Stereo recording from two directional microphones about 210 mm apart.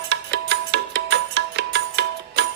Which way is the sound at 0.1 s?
55° right (ahead or behind).